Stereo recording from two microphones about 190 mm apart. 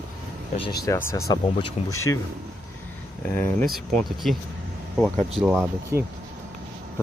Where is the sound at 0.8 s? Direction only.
15° left (ahead or behind).